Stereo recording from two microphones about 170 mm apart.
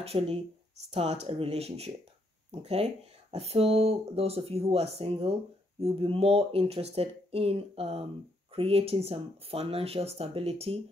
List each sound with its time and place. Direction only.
0.0 s speech: 35° right (ahead or behind)